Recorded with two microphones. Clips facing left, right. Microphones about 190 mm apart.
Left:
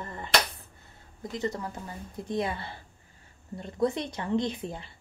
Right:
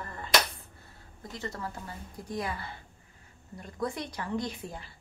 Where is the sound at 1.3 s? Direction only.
20° left (ahead or behind).